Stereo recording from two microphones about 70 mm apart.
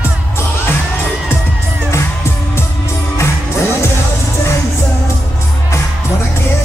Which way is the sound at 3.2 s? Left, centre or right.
Left.